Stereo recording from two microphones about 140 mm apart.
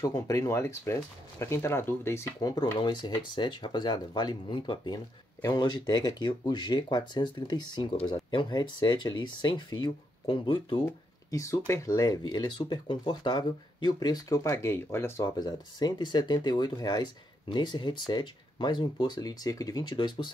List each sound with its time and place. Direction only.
0.0 s speech: 25° left (ahead or behind)
11.2 s speech: 20° left (ahead or behind)